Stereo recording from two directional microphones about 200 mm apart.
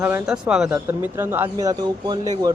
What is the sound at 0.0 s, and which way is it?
Speech, 5° right (ahead or behind).